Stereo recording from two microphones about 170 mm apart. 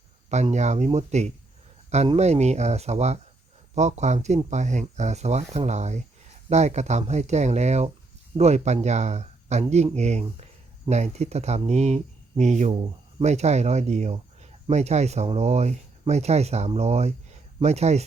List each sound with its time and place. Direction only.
0.5 s speech: 40° right (ahead or behind)